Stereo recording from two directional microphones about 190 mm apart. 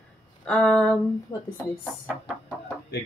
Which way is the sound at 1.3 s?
20° left (ahead or behind).